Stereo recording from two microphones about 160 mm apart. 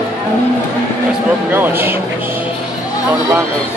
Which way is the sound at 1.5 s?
15° right (ahead or behind).